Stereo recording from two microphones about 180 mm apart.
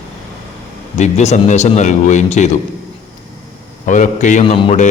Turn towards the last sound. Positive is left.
turn(degrees=35)  # may be behind; listen again after turning